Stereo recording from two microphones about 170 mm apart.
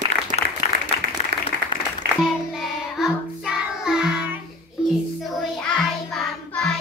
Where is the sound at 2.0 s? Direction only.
70° right (ahead or behind).